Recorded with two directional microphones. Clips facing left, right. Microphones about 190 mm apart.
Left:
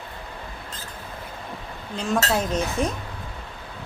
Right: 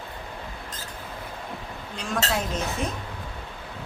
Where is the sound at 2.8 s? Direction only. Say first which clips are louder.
Left 6 dB; 40° left (ahead or behind).